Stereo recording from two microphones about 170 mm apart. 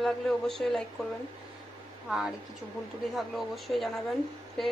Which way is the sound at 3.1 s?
Centre (ahead or behind).